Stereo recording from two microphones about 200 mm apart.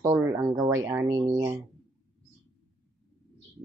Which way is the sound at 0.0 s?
15° right (ahead or behind).